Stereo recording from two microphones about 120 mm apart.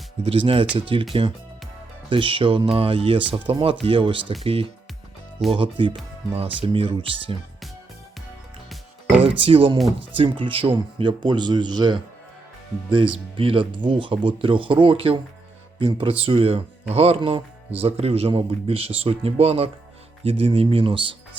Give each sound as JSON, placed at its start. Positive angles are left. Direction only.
{"t": 0.3, "sound": "speech", "side_deg": -45}
{"t": 2.0, "sound": "speech", "side_deg": -45}
{"t": 9.2, "sound": "a man's voice", "side_deg": -50}
{"t": 17.2, "sound": "speech", "side_deg": -45}
{"t": 17.7, "sound": "speech", "side_deg": -55}